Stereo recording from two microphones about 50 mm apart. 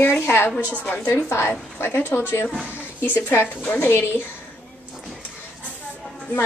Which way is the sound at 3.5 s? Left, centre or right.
Left.